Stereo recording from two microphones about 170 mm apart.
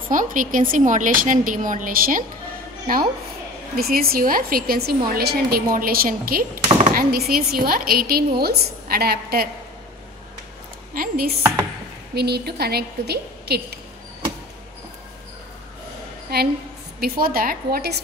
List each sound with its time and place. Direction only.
0.1 s a woman's voice: 50° right (ahead or behind)
3.7 s a woman's voice: 60° right (ahead or behind)
10.9 s a woman's voice: 60° right (ahead or behind)
16.3 s a woman's voice: 65° right (ahead or behind)